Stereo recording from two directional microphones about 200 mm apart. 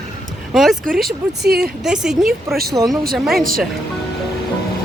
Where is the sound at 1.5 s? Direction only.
50° right (ahead or behind).